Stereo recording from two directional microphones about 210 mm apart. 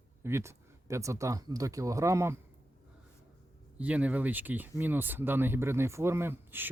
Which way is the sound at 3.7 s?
5° right (ahead or behind).